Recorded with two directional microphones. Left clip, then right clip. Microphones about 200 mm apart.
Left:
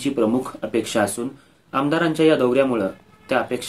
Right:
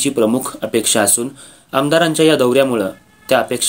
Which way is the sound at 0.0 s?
40° right (ahead or behind).